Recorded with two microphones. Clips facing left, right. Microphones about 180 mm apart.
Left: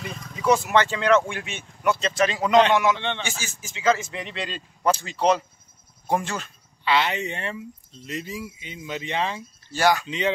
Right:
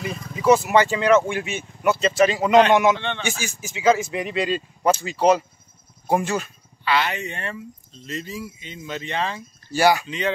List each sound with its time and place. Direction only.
0.0 s speech: 5° right (ahead or behind)
2.7 s a man's voice: 20° right (ahead or behind)
3.0 s speech: 15° left (ahead or behind)
3.3 s speech: 15° right (ahead or behind)
6.8 s speech: 20° left (ahead or behind)
9.7 s speech: 10° right (ahead or behind)
10.0 s speech: 20° left (ahead or behind)